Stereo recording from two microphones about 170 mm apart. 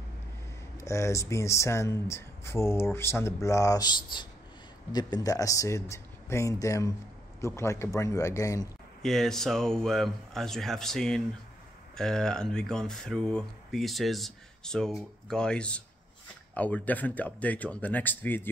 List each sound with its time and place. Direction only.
0.7 s speech: 15° left (ahead or behind)
9.0 s speech: centre (ahead or behind)